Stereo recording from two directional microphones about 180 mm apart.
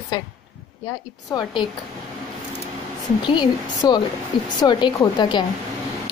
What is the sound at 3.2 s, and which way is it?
A woman's voice, 25° left (ahead or behind).